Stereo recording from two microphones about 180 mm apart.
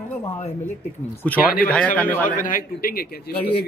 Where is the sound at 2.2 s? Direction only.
45° left (ahead or behind).